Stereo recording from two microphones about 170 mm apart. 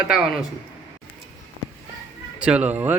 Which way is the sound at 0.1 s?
5° right (ahead or behind).